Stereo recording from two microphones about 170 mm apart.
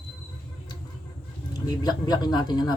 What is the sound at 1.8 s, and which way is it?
Speech, 25° left (ahead or behind).